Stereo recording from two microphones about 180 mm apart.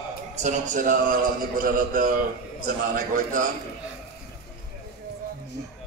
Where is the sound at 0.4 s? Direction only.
45° right (ahead or behind).